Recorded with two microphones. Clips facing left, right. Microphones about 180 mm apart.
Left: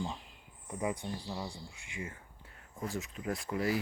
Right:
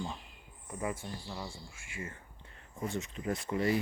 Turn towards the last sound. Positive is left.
turn(degrees=0)  # may be behind; listen again after turning